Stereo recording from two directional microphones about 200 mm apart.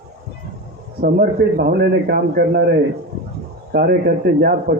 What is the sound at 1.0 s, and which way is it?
Speech, 55° right (ahead or behind).